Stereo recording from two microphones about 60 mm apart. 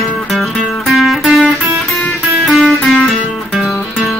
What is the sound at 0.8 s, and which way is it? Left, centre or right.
Music, centre.